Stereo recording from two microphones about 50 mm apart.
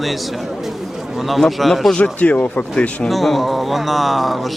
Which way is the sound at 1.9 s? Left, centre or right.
Left.